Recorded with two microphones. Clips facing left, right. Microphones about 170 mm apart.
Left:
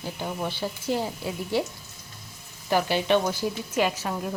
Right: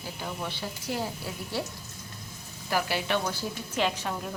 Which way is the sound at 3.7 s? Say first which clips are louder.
Left 3 dB; 5° left (ahead or behind).